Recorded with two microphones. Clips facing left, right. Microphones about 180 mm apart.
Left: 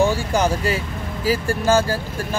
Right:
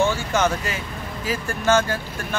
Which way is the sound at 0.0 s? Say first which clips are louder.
Left 2 dB; 35° left (ahead or behind).